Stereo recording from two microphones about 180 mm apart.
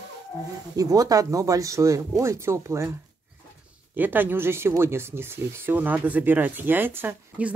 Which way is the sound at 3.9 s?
10° right (ahead or behind).